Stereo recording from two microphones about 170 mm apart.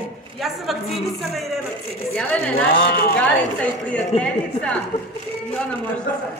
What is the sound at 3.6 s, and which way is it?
A woman's voice, 10° left (ahead or behind).